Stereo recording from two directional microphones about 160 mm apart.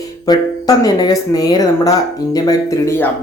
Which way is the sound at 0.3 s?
25° left (ahead or behind).